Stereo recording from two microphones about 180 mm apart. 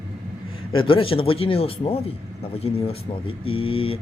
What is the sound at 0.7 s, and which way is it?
Speech, 30° left (ahead or behind).